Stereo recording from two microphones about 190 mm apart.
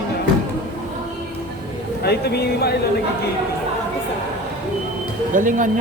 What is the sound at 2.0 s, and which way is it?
Speech, 55° left (ahead or behind).